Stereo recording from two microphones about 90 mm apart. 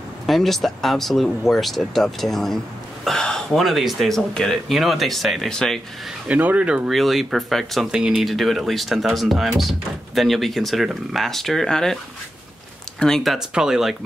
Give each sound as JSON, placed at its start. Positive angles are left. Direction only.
{"t": 0.3, "sound": "speech", "side_deg": 0}
{"t": 6.2, "sound": "speech", "side_deg": -15}
{"t": 6.9, "sound": "speech", "side_deg": 0}
{"t": 7.9, "sound": "speech", "side_deg": -10}
{"t": 13.0, "sound": "speech", "side_deg": 5}